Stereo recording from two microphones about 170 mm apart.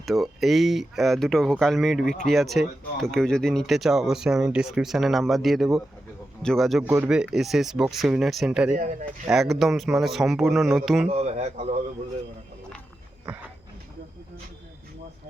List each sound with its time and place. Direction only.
0.0 s speech: centre (ahead or behind)
6.8 s speech: 10° right (ahead or behind)
8.7 s speech: 45° right (ahead or behind)
9.3 s speech: centre (ahead or behind)
11.1 s speech: 40° right (ahead or behind)
13.3 s a sound: 5° right (ahead or behind)